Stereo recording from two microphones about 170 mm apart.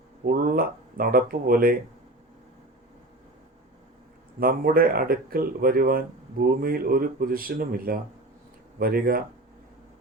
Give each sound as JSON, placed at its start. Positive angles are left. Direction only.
{"t": 0.3, "sound": "speech", "side_deg": -60}
{"t": 4.4, "sound": "speech", "side_deg": -60}